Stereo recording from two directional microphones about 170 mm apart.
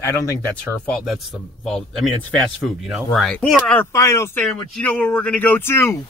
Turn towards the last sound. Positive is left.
turn(degrees=15)  # may be behind; listen again after turning